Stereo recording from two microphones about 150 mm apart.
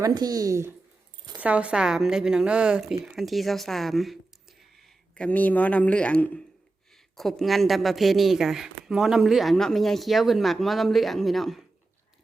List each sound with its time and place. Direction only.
0.0 s speech: 25° right (ahead or behind)
1.4 s speech: 10° right (ahead or behind)